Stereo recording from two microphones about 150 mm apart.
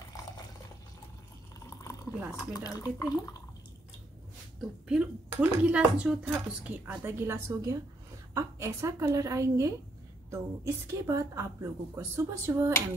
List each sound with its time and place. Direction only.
2.5 s speech: 25° left (ahead or behind)
4.8 s a woman's voice: 5° right (ahead or behind)